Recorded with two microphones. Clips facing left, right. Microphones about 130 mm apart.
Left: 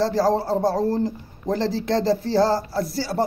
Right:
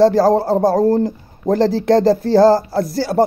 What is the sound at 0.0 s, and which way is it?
Speech, 45° right (ahead or behind).